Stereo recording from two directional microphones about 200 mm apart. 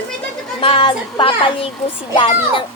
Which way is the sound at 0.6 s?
25° left (ahead or behind).